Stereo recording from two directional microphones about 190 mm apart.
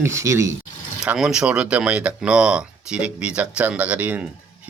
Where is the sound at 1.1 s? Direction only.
5° right (ahead or behind).